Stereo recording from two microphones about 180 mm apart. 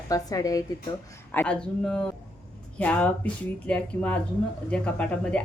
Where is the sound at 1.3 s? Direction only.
5° left (ahead or behind).